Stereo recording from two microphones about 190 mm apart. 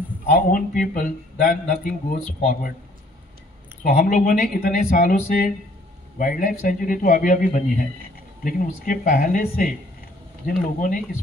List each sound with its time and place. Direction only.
0.3 s a man's voice: 45° left (ahead or behind)
3.8 s a man's voice: 45° left (ahead or behind)